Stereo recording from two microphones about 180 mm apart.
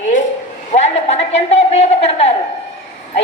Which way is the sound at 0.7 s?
40° left (ahead or behind).